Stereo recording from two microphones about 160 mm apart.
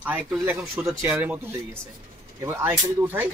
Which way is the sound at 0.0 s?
10° right (ahead or behind).